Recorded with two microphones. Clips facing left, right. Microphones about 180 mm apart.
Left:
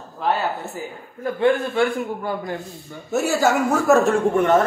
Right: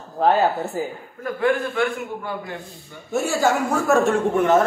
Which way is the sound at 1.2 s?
25° left (ahead or behind).